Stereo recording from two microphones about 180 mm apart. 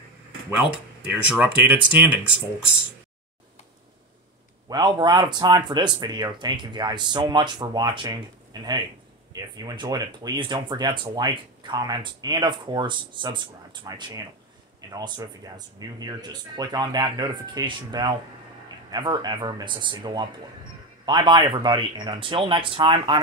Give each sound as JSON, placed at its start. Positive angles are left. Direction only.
{"t": 1.0, "sound": "speech", "side_deg": -10}
{"t": 4.6, "sound": "speech", "side_deg": -25}